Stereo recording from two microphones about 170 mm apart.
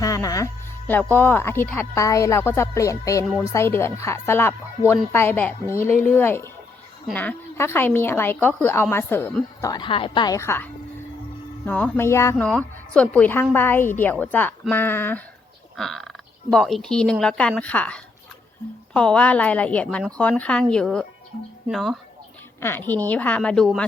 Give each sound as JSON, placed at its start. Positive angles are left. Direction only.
{"t": 0.0, "sound": "music", "side_deg": 20}
{"t": 1.1, "sound": "speech", "side_deg": 10}
{"t": 15.7, "sound": "frog", "side_deg": 0}
{"t": 16.5, "sound": "a woman's voice", "side_deg": 0}
{"t": 22.6, "sound": "speech", "side_deg": 10}